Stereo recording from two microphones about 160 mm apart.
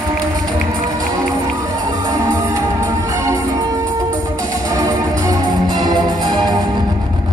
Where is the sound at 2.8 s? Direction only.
20° right (ahead or behind).